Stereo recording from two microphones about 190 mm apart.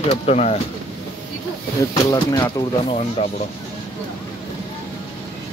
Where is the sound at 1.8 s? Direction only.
20° left (ahead or behind).